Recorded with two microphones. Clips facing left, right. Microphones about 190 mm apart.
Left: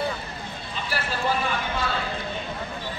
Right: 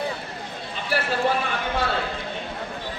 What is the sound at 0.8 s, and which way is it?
Speech, 60° right (ahead or behind).